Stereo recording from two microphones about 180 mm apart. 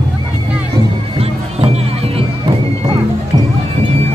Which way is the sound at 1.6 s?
35° right (ahead or behind).